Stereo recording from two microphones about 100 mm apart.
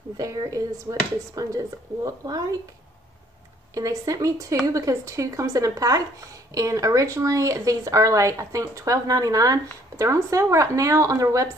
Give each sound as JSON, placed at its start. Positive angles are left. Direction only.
{"t": 0.2, "sound": "speech", "side_deg": -35}
{"t": 3.7, "sound": "speech", "side_deg": -35}